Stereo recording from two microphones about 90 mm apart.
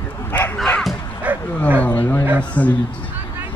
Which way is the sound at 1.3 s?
15° right (ahead or behind).